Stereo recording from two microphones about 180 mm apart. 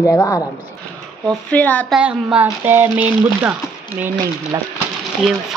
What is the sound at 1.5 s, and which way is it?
Speech, 10° left (ahead or behind).